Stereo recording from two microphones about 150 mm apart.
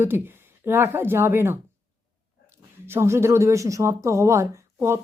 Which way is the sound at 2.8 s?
15° right (ahead or behind).